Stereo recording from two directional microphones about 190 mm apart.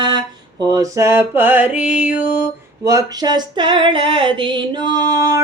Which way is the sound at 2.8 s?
20° right (ahead or behind).